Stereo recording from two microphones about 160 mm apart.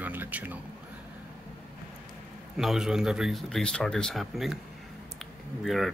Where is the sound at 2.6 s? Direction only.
Centre (ahead or behind).